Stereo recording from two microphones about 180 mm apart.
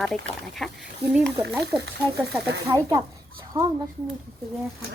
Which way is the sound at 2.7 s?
20° right (ahead or behind).